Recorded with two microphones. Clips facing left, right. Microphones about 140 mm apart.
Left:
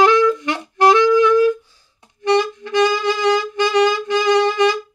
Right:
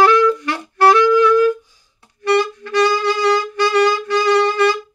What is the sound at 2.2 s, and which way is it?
Saxophone, 20° left (ahead or behind).